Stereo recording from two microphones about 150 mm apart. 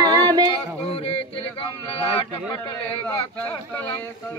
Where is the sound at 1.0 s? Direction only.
40° left (ahead or behind).